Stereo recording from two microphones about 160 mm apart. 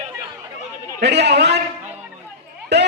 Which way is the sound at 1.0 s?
90° right.